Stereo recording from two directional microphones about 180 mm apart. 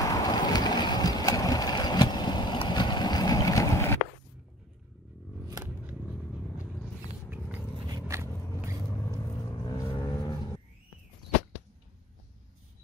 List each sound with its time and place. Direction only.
0.0 s a sound: 20° left (ahead or behind)
7.8 s vehicle: 20° right (ahead or behind)
9.5 s music: 20° left (ahead or behind)